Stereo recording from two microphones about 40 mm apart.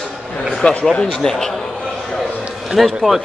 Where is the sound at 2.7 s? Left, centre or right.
Centre.